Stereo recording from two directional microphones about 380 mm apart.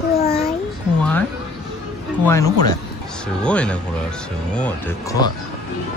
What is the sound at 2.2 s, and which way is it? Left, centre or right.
Speech, centre.